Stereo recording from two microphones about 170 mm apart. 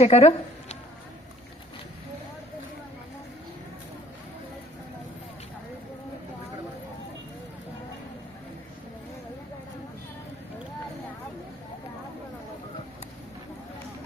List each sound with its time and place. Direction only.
0.0 s speech: 40° left (ahead or behind)